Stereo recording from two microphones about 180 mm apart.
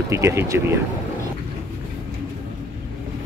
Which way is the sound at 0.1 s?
15° right (ahead or behind).